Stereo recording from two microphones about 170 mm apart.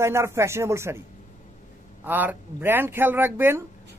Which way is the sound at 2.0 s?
10° right (ahead or behind).